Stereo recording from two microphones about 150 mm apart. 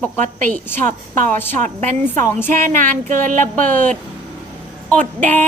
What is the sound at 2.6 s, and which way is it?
Speech, 60° right (ahead or behind).